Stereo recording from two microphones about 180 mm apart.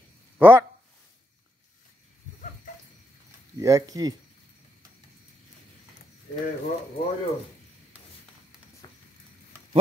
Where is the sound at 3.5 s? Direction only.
20° right (ahead or behind).